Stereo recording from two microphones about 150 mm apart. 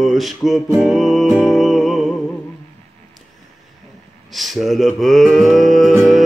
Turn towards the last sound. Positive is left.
turn(degrees=0)  # may be behind; listen again after turning